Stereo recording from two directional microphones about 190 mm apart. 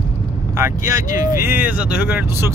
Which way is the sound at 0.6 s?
15° right (ahead or behind).